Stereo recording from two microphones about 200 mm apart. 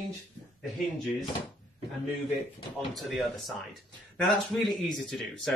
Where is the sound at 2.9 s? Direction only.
Centre (ahead or behind).